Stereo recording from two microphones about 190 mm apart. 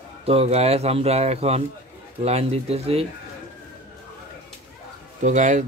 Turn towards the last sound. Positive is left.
turn(degrees=-40)  # may be behind; listen again after turning